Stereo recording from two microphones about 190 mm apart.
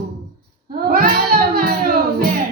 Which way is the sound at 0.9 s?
50° right (ahead or behind).